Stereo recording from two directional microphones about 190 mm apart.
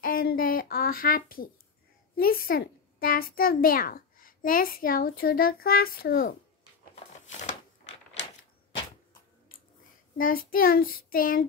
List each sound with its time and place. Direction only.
0.0 s a child's voice: 50° left (ahead or behind)
7.2 s a sound: 40° left (ahead or behind)
10.1 s a child's voice: 50° left (ahead or behind)